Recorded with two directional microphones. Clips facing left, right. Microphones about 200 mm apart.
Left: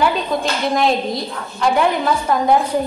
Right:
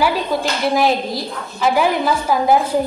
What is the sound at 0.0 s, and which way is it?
A woman's voice, 5° right (ahead or behind).